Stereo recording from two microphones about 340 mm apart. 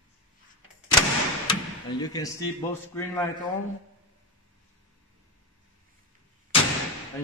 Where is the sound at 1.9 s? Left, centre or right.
Centre.